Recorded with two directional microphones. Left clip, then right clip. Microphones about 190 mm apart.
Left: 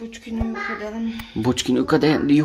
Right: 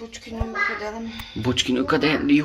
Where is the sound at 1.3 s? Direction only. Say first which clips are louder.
Left 1 dB; 30° left (ahead or behind).